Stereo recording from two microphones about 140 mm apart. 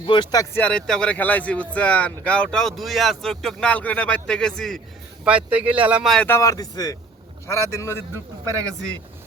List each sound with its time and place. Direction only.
0.0 s speech: 35° left (ahead or behind)
0.5 s speech: 10° left (ahead or behind)
5.2 s speech: 10° right (ahead or behind)
6.2 s speech: 20° left (ahead or behind)
8.4 s speech: 20° right (ahead or behind)